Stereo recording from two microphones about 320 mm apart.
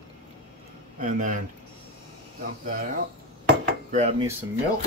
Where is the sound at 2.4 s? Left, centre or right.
Right.